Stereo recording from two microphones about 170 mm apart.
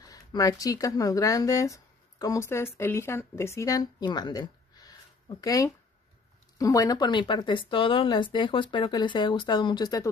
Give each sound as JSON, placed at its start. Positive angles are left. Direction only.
{"t": 0.0, "sound": "speech", "side_deg": 20}